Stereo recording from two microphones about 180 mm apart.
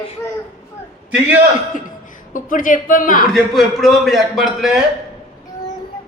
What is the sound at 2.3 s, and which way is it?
Speech, 50° left (ahead or behind).